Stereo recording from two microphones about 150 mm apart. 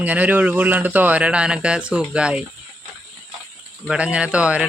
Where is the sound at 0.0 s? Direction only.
10° right (ahead or behind).